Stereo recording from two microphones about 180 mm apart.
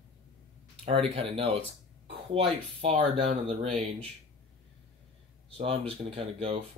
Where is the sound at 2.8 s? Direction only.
30° right (ahead or behind).